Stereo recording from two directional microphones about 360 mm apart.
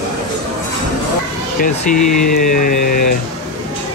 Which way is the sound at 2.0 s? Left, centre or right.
Left.